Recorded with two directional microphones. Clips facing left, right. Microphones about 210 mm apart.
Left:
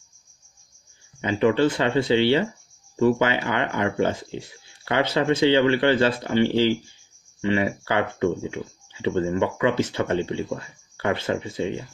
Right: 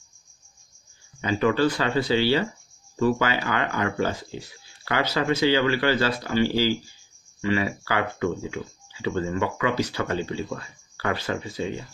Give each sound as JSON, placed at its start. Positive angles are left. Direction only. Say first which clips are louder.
{"t": 1.2, "sound": "speech", "louder": "left 2 dB", "side_deg": 25}